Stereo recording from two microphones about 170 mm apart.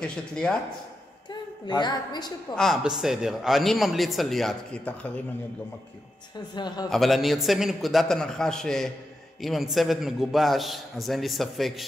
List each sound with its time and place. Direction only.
0.0 s speech: 5° left (ahead or behind)
1.3 s a woman's voice: 25° left (ahead or behind)
2.5 s speech: centre (ahead or behind)
6.3 s a woman's voice: 25° left (ahead or behind)
6.9 s speech: centre (ahead or behind)